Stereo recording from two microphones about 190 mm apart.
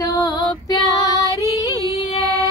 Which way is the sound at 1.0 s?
20° left (ahead or behind).